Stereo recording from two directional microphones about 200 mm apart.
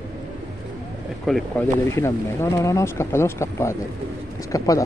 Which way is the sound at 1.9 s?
15° left (ahead or behind).